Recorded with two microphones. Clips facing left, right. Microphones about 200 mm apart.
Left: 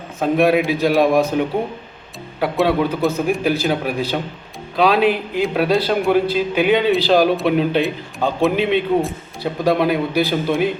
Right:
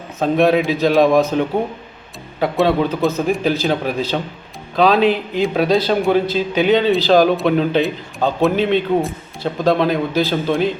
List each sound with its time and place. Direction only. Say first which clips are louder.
0.2 s a man's voice: right 1 dB; 10° left (ahead or behind)